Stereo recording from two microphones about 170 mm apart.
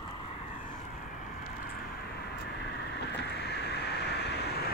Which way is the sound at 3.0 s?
80° left.